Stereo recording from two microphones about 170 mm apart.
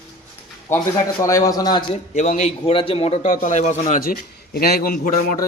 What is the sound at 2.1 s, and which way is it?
A man's voice, 45° left (ahead or behind).